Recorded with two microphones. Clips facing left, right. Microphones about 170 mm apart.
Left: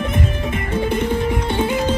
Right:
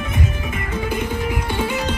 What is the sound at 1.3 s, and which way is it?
Music, 25° left (ahead or behind).